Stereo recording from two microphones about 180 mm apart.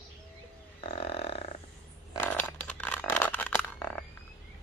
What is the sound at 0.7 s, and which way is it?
Burping, 30° left (ahead or behind).